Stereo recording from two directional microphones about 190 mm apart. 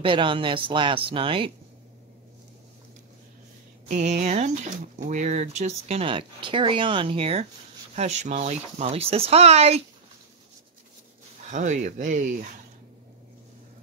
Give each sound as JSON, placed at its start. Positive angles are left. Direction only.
{"t": 0.0, "sound": "speech", "side_deg": -25}
{"t": 3.9, "sound": "speech", "side_deg": -35}
{"t": 11.4, "sound": "speech", "side_deg": -40}